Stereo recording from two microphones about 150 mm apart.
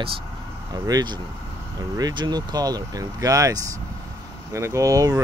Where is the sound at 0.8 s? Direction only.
25° right (ahead or behind).